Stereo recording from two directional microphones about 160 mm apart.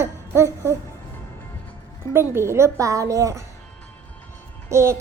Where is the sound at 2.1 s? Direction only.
15° right (ahead or behind).